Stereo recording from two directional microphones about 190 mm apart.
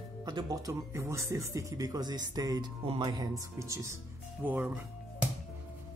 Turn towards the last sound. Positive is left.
turn(degrees=-10)  # may be behind; listen again after turning